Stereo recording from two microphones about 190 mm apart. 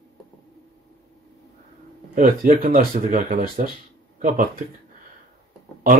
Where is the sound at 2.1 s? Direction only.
45° right (ahead or behind).